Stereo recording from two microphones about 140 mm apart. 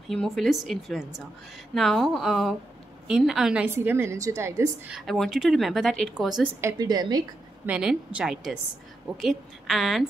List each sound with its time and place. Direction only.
0.1 s speech: 5° left (ahead or behind)
3.6 s a woman's voice: 15° right (ahead or behind)
4.8 s speech: centre (ahead or behind)
6.6 s a woman's voice: 30° right (ahead or behind)
7.6 s a woman's voice: 5° right (ahead or behind)